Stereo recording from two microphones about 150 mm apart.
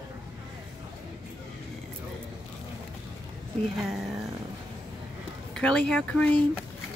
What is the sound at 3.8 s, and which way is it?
Speech, centre (ahead or behind).